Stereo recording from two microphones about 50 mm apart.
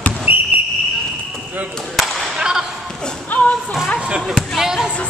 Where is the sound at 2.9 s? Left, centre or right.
Centre.